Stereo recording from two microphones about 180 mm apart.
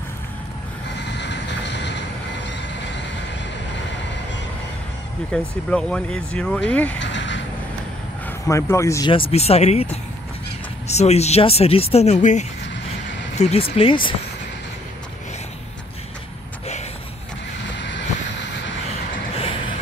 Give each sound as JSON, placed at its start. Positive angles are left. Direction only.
{"t": 0.9, "sound": "train", "side_deg": 75}
{"t": 5.3, "sound": "speech", "side_deg": 5}
{"t": 7.0, "sound": "vehicle", "side_deg": 90}
{"t": 8.3, "sound": "speech", "side_deg": 15}
{"t": 9.1, "sound": "speech", "side_deg": 35}
{"t": 17.7, "sound": "vehicle", "side_deg": 80}